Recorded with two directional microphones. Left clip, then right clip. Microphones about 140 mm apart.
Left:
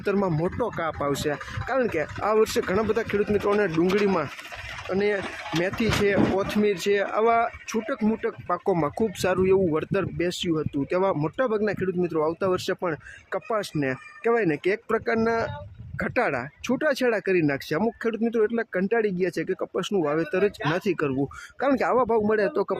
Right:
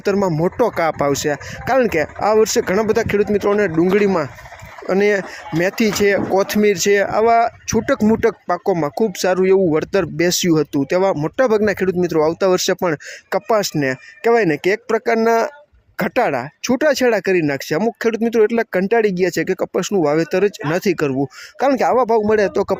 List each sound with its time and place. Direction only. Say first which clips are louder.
0.0 s speech: right 7 dB; 35° right (ahead or behind)
0.4 s speech: right 10 dB; 45° right (ahead or behind)
3.2 s speech: right 7 dB; 25° right (ahead or behind)
4.9 s speech: right 9 dB; 50° right (ahead or behind); by 11.3 s 30° right (ahead or behind)
11.3 s speech: right 9 dB; 40° right (ahead or behind)
13.7 s speech: right 8 dB; 35° right (ahead or behind)